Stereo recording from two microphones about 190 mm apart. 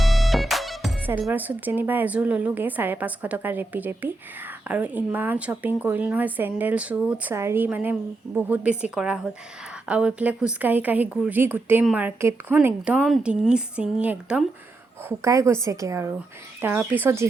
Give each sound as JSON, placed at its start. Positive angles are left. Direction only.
{"t": 0.0, "sound": "music", "side_deg": 0}
{"t": 1.0, "sound": "a woman's voice", "side_deg": -10}